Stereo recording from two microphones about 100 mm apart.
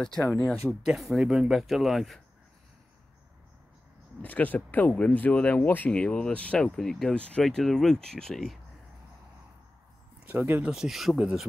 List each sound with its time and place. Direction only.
0.0 s speech: 5° left (ahead or behind)
4.2 s speech: 15° left (ahead or behind)
10.2 s speech: 20° right (ahead or behind)
10.7 s speech: 5° right (ahead or behind)